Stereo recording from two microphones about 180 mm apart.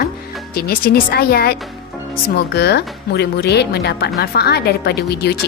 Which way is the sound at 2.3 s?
70° left (ahead or behind).